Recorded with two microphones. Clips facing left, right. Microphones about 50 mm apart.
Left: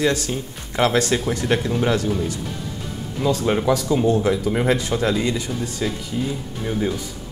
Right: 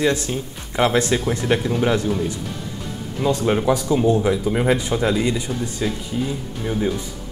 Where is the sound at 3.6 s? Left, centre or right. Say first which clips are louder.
Even; centre.